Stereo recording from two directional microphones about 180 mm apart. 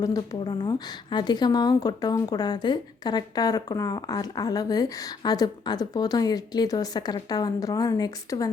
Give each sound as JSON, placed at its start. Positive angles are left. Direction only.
{"t": 0.0, "sound": "a woman's voice", "side_deg": 20}